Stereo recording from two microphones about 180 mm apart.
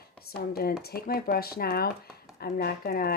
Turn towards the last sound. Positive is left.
turn(degrees=55)  # may be behind; listen again after turning